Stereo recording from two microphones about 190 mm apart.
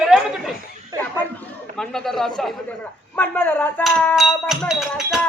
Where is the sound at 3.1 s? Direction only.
10° left (ahead or behind).